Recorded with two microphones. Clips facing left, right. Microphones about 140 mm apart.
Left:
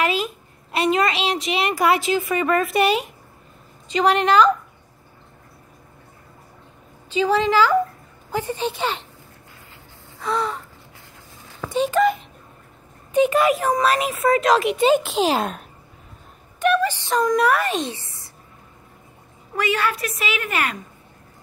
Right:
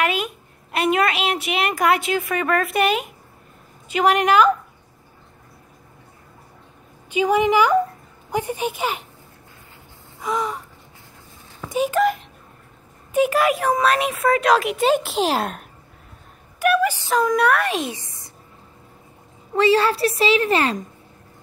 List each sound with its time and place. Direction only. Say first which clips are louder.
0.7 s a child's voice: even; centre (ahead or behind)
7.1 s a woman's voice: right 1 dB; 15° right (ahead or behind)
10.2 s a child's voice: even; 10° right (ahead or behind)
11.7 s a child's voice: left 1 dB; 5° right (ahead or behind)
17.8 s a sound: right 1 dB; 15° right (ahead or behind)
19.5 s a woman's voice: right 6 dB; 30° right (ahead or behind)